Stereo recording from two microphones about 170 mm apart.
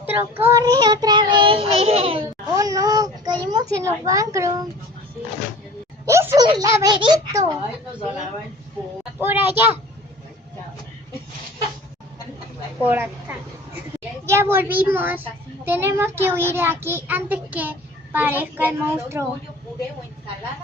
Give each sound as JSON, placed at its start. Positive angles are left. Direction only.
{"t": 0.0, "sound": "child singing", "side_deg": -10}
{"t": 2.6, "sound": "a sound", "side_deg": -20}
{"t": 6.1, "sound": "laughter", "side_deg": -15}
{"t": 6.5, "sound": "child singing", "side_deg": -20}
{"t": 9.2, "sound": "a child's voice", "side_deg": -10}
{"t": 12.8, "sound": "a woman's voice", "side_deg": -10}